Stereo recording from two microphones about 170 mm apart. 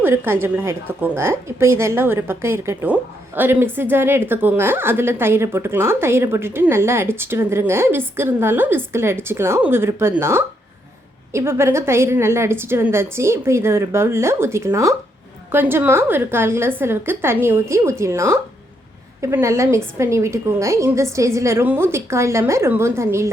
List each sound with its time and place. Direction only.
0.0 s a woman's voice: 15° right (ahead or behind)